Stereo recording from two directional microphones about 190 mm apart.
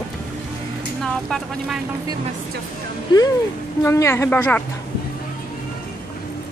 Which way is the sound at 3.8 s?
15° left (ahead or behind).